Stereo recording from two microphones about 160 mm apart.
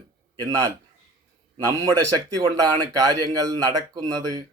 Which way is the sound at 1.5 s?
25° right (ahead or behind).